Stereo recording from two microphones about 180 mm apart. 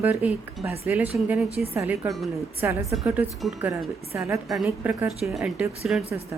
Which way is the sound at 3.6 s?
15° right (ahead or behind).